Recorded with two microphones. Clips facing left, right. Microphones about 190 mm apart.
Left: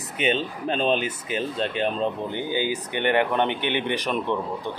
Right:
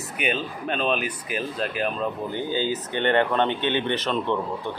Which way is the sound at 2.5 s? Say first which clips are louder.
Even; 15° left (ahead or behind).